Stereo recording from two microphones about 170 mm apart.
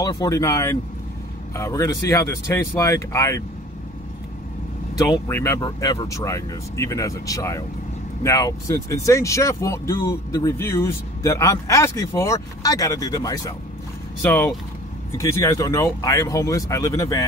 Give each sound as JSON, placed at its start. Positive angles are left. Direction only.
{"t": 0.0, "sound": "speech", "side_deg": 20}
{"t": 4.9, "sound": "speech", "side_deg": 20}